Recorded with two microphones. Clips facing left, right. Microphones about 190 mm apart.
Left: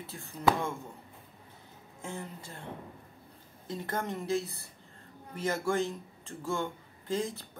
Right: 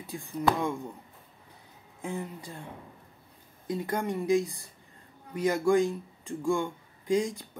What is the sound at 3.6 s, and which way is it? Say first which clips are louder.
Speech: right 4 dB; 15° right (ahead or behind).